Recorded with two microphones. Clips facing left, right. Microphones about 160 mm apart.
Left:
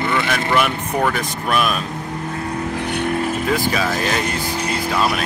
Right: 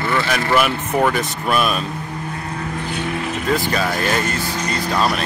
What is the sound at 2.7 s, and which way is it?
Vehicle, 65° left (ahead or behind).